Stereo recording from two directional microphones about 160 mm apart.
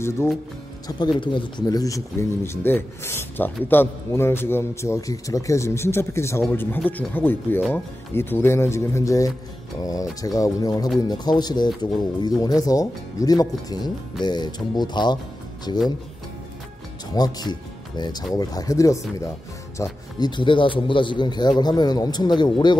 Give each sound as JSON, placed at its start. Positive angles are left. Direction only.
{"t": 0.8, "sound": "a man's voice", "side_deg": 25}
{"t": 17.1, "sound": "a man's voice", "side_deg": 25}